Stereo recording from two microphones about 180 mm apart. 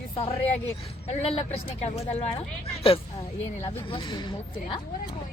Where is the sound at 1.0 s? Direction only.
35° left (ahead or behind).